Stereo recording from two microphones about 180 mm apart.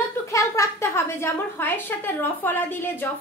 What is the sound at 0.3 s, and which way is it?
A woman's voice, 15° left (ahead or behind).